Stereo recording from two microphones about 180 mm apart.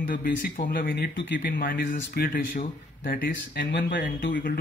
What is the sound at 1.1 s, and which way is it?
Speech, 90° left.